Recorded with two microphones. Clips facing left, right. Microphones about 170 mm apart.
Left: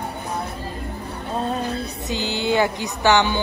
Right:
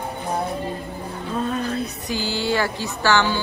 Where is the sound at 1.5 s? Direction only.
25° left (ahead or behind).